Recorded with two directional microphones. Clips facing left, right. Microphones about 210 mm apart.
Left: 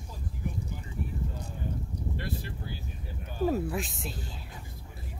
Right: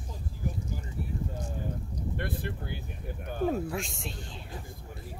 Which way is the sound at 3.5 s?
Centre (ahead or behind).